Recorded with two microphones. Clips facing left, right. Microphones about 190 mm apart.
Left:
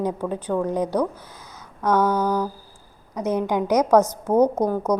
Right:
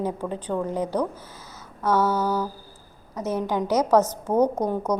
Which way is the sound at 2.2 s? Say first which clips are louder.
Left 2 dB; 5° right (ahead or behind).